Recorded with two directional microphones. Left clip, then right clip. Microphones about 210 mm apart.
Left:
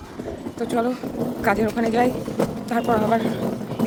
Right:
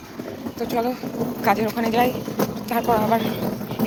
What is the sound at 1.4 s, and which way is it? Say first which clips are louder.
Speech: even; 20° left (ahead or behind).